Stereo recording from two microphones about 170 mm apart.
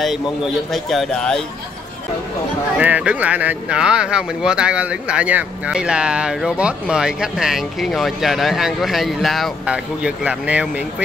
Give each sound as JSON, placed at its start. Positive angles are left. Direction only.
{"t": 0.8, "sound": "speech", "side_deg": 5}
{"t": 2.8, "sound": "speech", "side_deg": -10}